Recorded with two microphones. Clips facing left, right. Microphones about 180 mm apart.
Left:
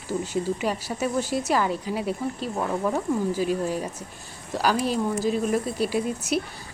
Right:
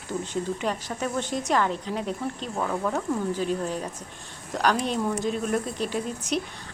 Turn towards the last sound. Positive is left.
turn(degrees=10)  # may be behind; listen again after turning